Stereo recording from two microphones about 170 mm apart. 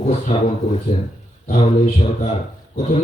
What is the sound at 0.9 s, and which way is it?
A man's voice, 35° left (ahead or behind).